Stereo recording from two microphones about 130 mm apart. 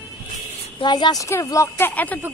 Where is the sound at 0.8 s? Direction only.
35° left (ahead or behind); by 2.2 s 10° left (ahead or behind).